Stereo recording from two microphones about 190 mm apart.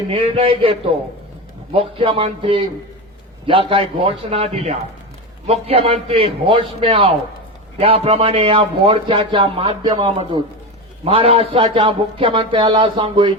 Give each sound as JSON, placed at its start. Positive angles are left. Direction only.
{"t": 0.1, "sound": "a man's voice", "side_deg": -30}